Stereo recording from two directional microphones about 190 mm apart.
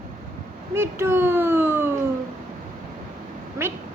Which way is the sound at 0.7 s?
15° right (ahead or behind).